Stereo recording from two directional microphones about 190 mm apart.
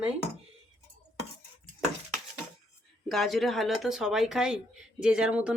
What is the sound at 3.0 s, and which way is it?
Speech, centre (ahead or behind).